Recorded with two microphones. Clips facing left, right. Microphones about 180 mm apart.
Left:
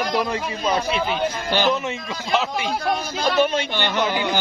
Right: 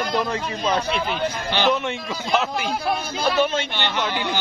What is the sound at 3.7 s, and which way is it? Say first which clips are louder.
Speech: left 3 dB; 45° left (ahead or behind).